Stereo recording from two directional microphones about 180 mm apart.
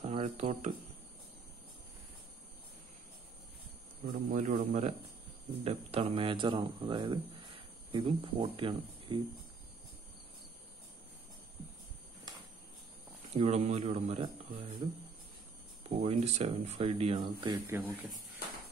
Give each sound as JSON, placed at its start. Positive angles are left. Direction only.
{"t": 0.0, "sound": "speech", "side_deg": -35}
{"t": 4.0, "sound": "speech", "side_deg": -55}
{"t": 4.4, "sound": "speech", "side_deg": -40}
{"t": 13.3, "sound": "speech", "side_deg": -35}
{"t": 17.6, "sound": "speech", "side_deg": -10}